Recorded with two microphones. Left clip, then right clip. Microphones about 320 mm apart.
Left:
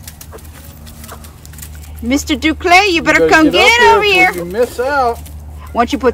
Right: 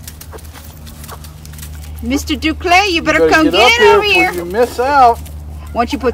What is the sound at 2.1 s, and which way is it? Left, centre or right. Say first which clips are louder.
Speech: left 2 dB; centre.